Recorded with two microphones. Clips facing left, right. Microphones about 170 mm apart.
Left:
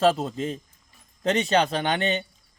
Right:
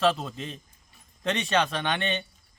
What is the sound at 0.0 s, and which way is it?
A man's voice, 40° left (ahead or behind).